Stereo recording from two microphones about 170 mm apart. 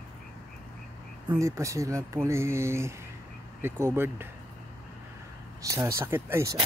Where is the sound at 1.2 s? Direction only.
20° right (ahead or behind).